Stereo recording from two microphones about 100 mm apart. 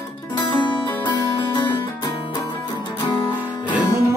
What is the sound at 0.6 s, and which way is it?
Music, 55° left (ahead or behind).